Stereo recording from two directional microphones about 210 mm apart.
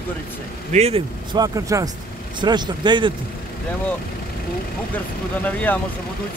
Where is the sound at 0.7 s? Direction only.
30° right (ahead or behind).